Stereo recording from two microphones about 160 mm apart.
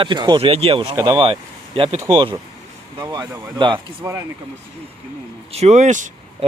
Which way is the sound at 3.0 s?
25° right (ahead or behind).